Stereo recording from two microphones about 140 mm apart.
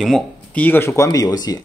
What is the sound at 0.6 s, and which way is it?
Speech, 15° left (ahead or behind).